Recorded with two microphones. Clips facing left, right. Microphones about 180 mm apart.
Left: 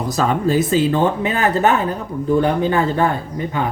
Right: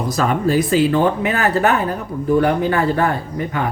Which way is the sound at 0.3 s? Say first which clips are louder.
Even; 25° left (ahead or behind).